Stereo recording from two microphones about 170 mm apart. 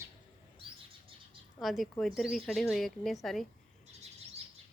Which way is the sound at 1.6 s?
Centre (ahead or behind).